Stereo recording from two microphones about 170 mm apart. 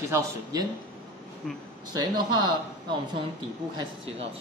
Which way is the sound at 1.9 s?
25° right (ahead or behind).